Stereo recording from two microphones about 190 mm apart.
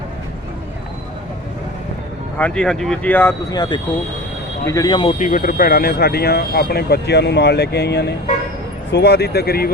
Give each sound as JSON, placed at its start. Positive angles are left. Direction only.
{"t": 2.4, "sound": "speech", "side_deg": 5}
{"t": 5.2, "sound": "speech", "side_deg": 45}